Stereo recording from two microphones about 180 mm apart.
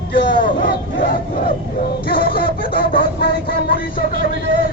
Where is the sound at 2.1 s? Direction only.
55° left (ahead or behind).